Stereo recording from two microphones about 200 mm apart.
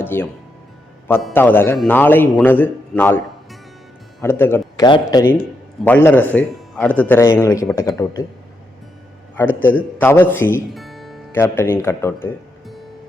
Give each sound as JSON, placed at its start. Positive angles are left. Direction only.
{"t": 0.0, "sound": "speech", "side_deg": 10}
{"t": 1.3, "sound": "speech", "side_deg": 10}
{"t": 9.5, "sound": "a man's voice", "side_deg": -10}
{"t": 10.0, "sound": "speech", "side_deg": 10}
{"t": 10.8, "sound": "music", "side_deg": 0}
{"t": 11.3, "sound": "speech", "side_deg": 10}